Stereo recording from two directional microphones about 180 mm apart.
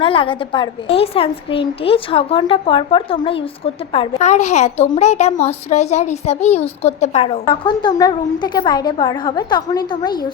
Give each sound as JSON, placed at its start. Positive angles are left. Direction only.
{"t": 0.0, "sound": "a child's voice", "side_deg": 30}